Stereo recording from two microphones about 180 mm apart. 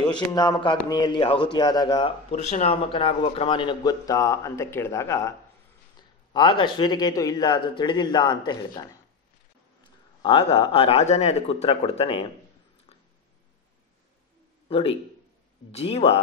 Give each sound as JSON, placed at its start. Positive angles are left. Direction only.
{"t": 0.1, "sound": "speech", "side_deg": 20}
{"t": 6.3, "sound": "speech", "side_deg": 25}
{"t": 10.2, "sound": "speech", "side_deg": 30}
{"t": 14.7, "sound": "a man's voice", "side_deg": 30}